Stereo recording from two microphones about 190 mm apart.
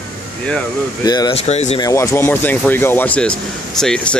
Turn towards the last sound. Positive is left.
turn(degrees=5)  # may be behind; listen again after turning